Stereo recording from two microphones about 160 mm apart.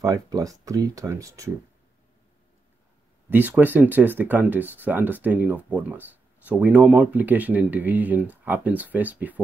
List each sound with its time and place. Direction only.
0.0 s speech: 20° right (ahead or behind)
3.3 s speech: 10° right (ahead or behind)